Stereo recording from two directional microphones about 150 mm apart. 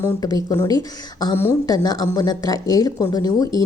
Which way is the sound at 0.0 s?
25° left (ahead or behind).